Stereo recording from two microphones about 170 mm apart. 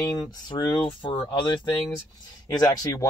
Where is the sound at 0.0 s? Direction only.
25° left (ahead or behind).